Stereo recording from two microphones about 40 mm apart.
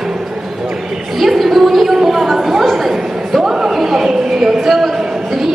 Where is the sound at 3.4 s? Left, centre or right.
Centre.